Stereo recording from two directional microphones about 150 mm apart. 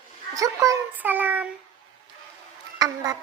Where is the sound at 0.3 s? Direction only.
20° right (ahead or behind).